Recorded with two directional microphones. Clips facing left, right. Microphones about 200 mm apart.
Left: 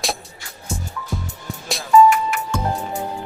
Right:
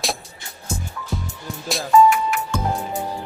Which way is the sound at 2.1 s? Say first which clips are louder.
Left 1 dB; centre (ahead or behind).